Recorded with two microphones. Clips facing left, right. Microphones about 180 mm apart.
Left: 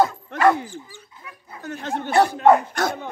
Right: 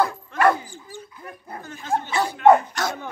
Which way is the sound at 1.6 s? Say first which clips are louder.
Right 1 dB; 70° left (ahead or behind).